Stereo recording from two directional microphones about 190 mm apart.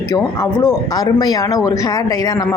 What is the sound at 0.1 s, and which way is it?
A woman's voice, 15° left (ahead or behind).